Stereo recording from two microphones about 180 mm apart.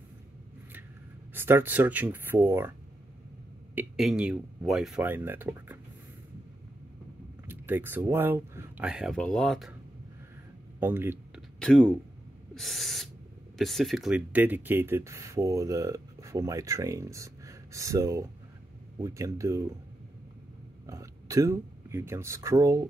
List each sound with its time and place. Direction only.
1.3 s speech: 10° right (ahead or behind)
3.7 s speech: centre (ahead or behind)
7.4 s speech: 10° right (ahead or behind)
10.8 s a sound: 10° right (ahead or behind)
11.6 s speech: 5° left (ahead or behind)
12.5 s owl: centre (ahead or behind)
13.6 s speech: centre (ahead or behind); by 19.7 s 15° right (ahead or behind)
20.8 s speech: 15° right (ahead or behind)